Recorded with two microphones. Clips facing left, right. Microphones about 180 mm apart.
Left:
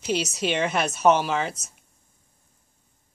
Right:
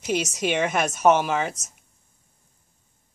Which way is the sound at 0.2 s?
45° right (ahead or behind).